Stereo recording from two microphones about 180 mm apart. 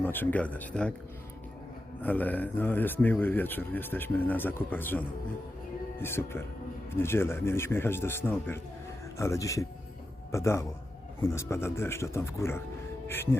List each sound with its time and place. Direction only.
0.0 s a man's voice: 10° left (ahead or behind)
2.0 s a man's voice: 10° left (ahead or behind)